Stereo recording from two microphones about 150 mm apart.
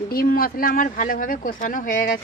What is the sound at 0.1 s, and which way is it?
Speech, 75° left (ahead or behind).